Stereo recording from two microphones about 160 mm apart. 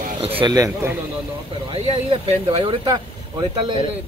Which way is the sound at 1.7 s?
40° right (ahead or behind).